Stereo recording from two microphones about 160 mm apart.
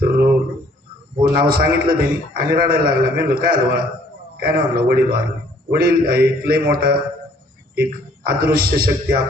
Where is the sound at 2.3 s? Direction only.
70° right (ahead or behind).